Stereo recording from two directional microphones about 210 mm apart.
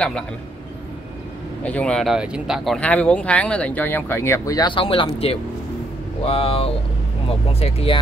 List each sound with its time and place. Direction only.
1.6 s speech: 5° left (ahead or behind); by 8.0 s 25° left (ahead or behind)